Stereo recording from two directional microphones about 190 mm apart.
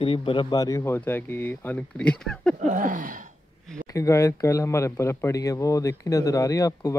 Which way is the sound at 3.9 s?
15° left (ahead or behind).